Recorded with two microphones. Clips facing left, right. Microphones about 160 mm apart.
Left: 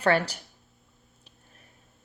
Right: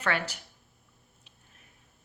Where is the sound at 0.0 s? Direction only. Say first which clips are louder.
Left 7 dB; 35° left (ahead or behind).